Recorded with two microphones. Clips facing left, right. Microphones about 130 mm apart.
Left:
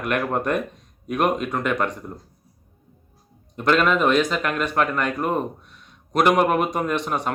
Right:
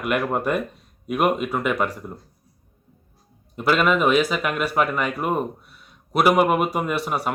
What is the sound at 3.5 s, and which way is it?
A man's voice, 5° right (ahead or behind).